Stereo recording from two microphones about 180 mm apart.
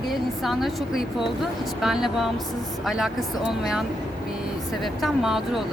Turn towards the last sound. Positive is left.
turn(degrees=0)  # may be behind; listen again after turning